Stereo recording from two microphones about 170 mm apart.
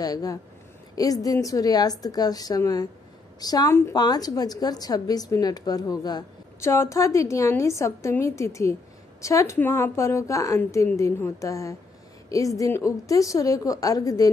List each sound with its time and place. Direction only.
0.0 s a woman's voice: 20° left (ahead or behind)